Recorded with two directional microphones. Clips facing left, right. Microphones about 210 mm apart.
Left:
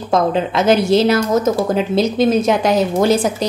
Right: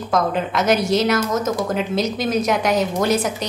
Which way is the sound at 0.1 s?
30° left (ahead or behind).